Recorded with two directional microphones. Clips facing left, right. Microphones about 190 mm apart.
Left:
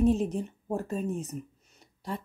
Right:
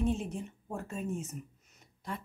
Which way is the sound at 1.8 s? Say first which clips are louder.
Left 5 dB; 35° left (ahead or behind).